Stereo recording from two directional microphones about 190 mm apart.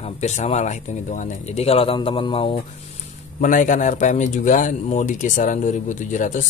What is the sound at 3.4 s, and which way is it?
Speech, 45° left (ahead or behind).